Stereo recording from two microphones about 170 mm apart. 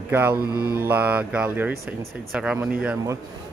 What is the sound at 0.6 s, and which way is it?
Mantra, 60° right (ahead or behind).